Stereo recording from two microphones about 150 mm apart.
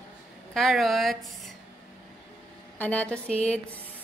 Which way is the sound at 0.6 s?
Centre (ahead or behind).